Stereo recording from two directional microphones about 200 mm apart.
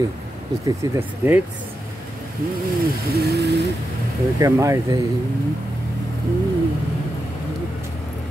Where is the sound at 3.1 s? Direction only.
55° right (ahead or behind).